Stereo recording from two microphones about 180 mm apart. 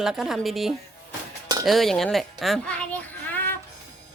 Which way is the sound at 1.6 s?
Centre (ahead or behind).